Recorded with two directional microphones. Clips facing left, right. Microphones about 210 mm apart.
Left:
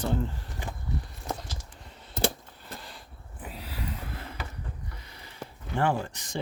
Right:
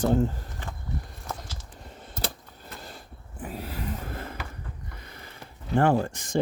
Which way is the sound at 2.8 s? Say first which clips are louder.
Right 3 dB; 45° right (ahead or behind).